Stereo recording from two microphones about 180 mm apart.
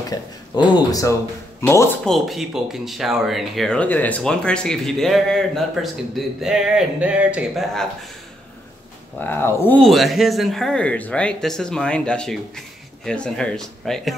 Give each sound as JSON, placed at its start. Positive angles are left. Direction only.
{"t": 0.1, "sound": "speech", "side_deg": 20}
{"t": 2.0, "sound": "speech", "side_deg": 0}
{"t": 9.2, "sound": "speech", "side_deg": 10}
{"t": 9.8, "sound": "speech", "side_deg": 0}